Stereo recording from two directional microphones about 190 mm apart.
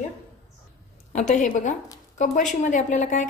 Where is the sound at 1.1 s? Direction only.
40° left (ahead or behind).